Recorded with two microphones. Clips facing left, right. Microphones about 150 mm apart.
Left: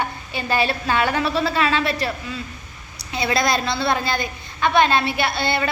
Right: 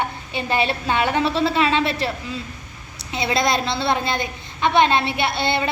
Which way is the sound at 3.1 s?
20° right (ahead or behind).